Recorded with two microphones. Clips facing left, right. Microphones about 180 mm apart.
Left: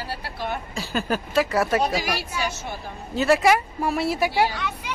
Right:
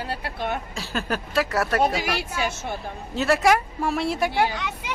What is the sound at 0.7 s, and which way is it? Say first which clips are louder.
Speech: left 2 dB; centre (ahead or behind).